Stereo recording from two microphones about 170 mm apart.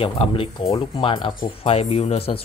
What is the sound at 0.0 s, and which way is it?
Speech, 30° left (ahead or behind).